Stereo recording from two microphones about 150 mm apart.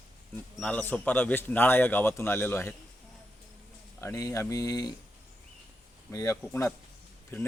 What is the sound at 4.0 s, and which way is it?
Speech, 20° left (ahead or behind).